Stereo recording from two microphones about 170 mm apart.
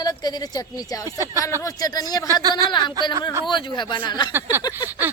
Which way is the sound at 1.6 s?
20° left (ahead or behind).